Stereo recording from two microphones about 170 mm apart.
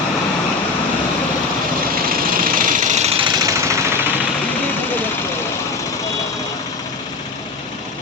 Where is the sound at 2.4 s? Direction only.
55° right (ahead or behind).